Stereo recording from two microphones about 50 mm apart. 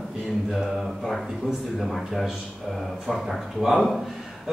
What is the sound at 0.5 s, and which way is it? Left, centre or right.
A man's voice, centre.